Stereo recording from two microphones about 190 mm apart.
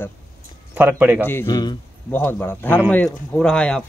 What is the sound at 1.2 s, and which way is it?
A man's voice, 15° left (ahead or behind).